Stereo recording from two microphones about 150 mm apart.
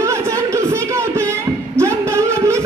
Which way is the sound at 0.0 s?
20° right (ahead or behind).